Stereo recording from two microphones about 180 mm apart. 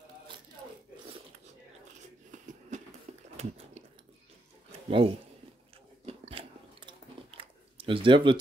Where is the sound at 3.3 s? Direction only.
35° right (ahead or behind).